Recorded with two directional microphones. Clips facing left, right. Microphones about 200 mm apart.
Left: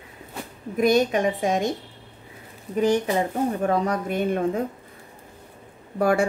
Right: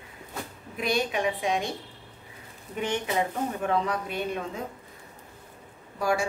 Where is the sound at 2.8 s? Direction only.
35° left (ahead or behind).